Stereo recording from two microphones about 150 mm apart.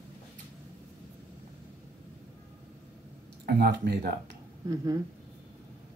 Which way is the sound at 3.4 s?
90° right.